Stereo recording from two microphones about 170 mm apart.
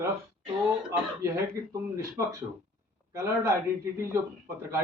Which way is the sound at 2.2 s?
15° right (ahead or behind).